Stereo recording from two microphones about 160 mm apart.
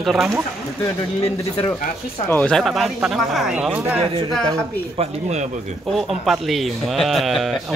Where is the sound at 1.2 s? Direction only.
40° left (ahead or behind).